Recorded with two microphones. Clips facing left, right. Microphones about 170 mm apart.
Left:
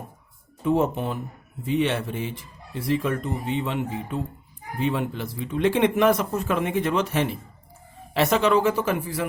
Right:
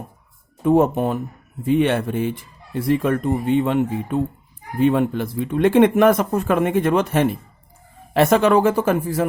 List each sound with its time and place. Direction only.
0.6 s speech: 50° right (ahead or behind)